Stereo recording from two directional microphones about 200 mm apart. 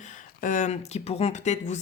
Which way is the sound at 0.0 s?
40° left (ahead or behind).